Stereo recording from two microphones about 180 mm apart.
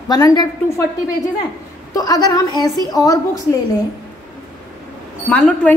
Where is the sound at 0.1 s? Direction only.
20° left (ahead or behind).